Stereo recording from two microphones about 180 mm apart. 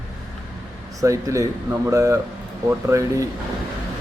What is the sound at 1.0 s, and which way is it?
A man's voice, 15° right (ahead or behind).